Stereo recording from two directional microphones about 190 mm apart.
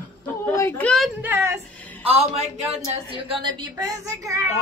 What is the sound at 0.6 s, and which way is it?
Speech, 10° left (ahead or behind).